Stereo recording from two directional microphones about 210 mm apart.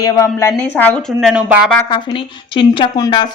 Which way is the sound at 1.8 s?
20° left (ahead or behind).